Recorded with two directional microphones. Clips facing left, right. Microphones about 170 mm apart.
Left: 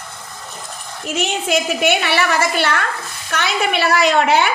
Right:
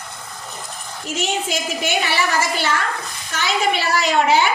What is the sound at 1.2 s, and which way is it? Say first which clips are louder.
A woman's voice: left 4 dB; 65° left (ahead or behind).